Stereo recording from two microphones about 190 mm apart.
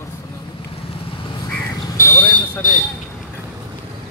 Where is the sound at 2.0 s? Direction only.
10° left (ahead or behind).